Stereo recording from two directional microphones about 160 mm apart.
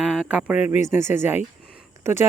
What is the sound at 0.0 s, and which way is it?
Speech, 5° right (ahead or behind).